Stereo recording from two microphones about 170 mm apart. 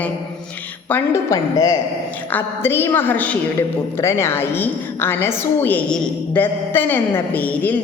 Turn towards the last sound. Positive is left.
turn(degrees=10)  # may be behind; listen again after turning